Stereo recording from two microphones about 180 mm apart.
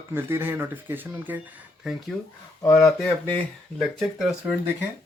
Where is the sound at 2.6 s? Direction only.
15° left (ahead or behind).